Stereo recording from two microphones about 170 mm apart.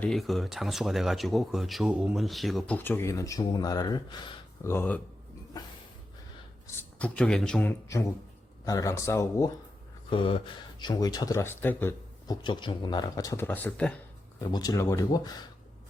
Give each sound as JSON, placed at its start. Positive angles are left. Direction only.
{"t": 0.0, "sound": "speech", "side_deg": 0}
{"t": 2.7, "sound": "speech", "side_deg": 10}
{"t": 4.7, "sound": "speech", "side_deg": 15}
{"t": 6.7, "sound": "speech", "side_deg": 5}
{"t": 10.1, "sound": "speech", "side_deg": 30}
{"t": 12.4, "sound": "speech", "side_deg": 30}
{"t": 14.4, "sound": "speech", "side_deg": 25}